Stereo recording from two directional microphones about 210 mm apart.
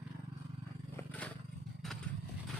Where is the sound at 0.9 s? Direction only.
5° left (ahead or behind).